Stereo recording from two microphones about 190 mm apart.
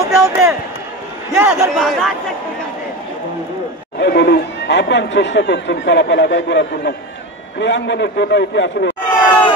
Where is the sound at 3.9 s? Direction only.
60° left (ahead or behind).